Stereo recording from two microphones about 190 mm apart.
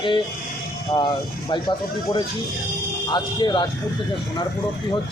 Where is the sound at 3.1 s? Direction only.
25° left (ahead or behind).